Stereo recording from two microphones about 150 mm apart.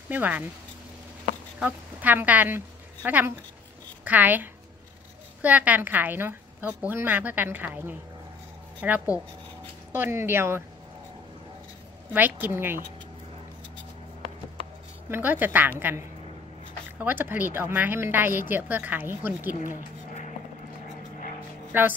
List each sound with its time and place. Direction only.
0.1 s a woman's voice: 10° right (ahead or behind)
1.6 s a woman's voice: 10° right (ahead or behind)
12.1 s a woman's voice: 10° right (ahead or behind)
15.0 s a woman's voice: 15° right (ahead or behind)
19.7 s a sound: 55° left (ahead or behind)
21.7 s a woman's voice: 10° right (ahead or behind)